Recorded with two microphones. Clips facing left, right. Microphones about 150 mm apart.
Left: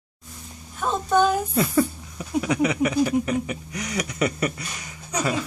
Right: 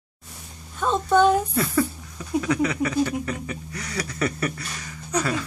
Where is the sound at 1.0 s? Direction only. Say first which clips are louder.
Right 2 dB; 20° left (ahead or behind).